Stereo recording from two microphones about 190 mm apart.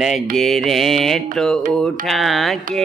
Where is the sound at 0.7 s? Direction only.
Centre (ahead or behind).